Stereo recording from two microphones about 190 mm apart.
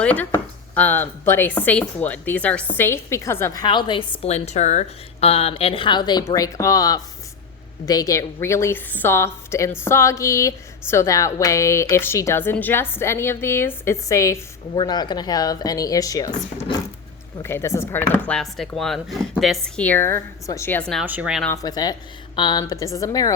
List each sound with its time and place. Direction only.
0.0 s a woman's voice: 10° left (ahead or behind)
21.0 s speech: 10° right (ahead or behind)
21.4 s speech: 15° left (ahead or behind)